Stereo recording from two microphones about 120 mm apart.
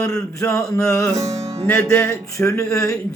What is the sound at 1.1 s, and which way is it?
Music, 25° right (ahead or behind).